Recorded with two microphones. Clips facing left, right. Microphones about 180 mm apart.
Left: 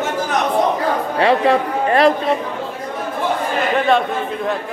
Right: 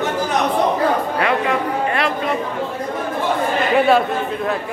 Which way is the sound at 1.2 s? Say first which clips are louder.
Left 8 dB; 35° left (ahead or behind).